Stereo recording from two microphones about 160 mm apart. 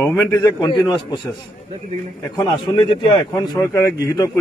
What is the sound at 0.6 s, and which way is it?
Speech, 30° left (ahead or behind).